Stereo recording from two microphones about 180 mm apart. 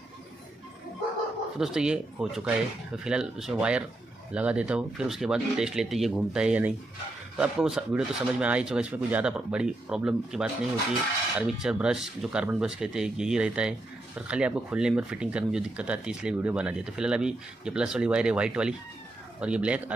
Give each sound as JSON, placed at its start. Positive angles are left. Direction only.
{"t": 1.6, "sound": "speech", "side_deg": -5}